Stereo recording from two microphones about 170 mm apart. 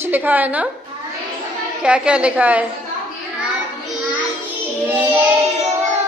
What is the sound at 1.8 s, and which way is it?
Speech, 5° right (ahead or behind).